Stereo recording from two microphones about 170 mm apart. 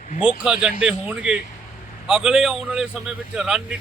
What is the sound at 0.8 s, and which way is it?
A man's voice, 5° right (ahead or behind).